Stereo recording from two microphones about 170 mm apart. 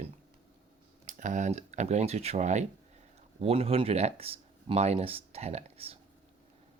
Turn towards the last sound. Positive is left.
turn(degrees=-35)  # may be behind; listen again after turning